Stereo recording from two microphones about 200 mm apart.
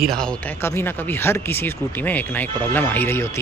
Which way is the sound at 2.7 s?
10° left (ahead or behind).